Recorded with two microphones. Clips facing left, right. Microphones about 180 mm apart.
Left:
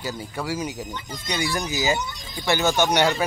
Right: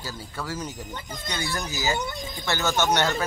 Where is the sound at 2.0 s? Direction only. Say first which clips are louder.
Right 2 dB; 55° right (ahead or behind).